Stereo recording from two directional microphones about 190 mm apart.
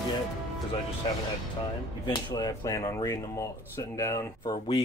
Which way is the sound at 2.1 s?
20° left (ahead or behind).